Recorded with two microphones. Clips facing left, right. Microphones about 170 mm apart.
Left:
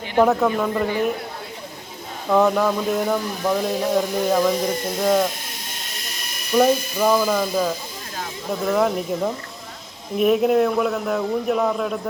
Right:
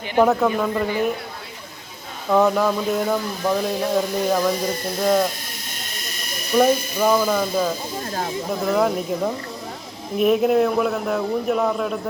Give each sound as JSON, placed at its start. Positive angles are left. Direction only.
{"t": 0.2, "sound": "speech", "side_deg": 0}
{"t": 2.3, "sound": "speech", "side_deg": 0}
{"t": 6.6, "sound": "speech", "side_deg": 0}